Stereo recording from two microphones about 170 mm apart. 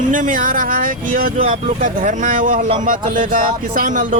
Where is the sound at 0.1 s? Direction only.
50° right (ahead or behind).